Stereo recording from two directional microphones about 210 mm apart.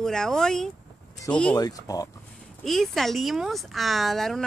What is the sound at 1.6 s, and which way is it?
Speech, 15° left (ahead or behind).